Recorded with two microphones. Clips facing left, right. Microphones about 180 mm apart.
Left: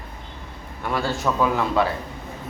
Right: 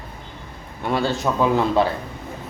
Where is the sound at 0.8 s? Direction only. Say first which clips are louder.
Right 3 dB; 25° right (ahead or behind).